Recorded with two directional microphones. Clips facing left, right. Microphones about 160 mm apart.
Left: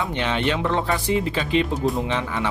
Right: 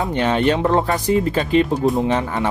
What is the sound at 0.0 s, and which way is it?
Speech, 45° right (ahead or behind).